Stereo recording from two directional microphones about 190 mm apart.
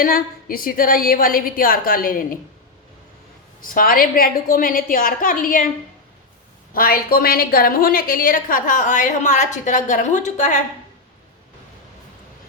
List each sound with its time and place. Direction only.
0.0 s a woman's voice: 50° left (ahead or behind)
3.6 s a woman's voice: 50° left (ahead or behind)
6.7 s a woman's voice: 50° left (ahead or behind)